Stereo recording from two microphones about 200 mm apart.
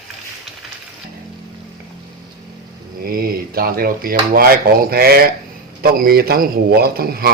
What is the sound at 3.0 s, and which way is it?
A man's voice, 50° right (ahead or behind).